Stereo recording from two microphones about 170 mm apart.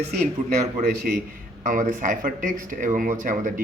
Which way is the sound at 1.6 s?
50° right (ahead or behind).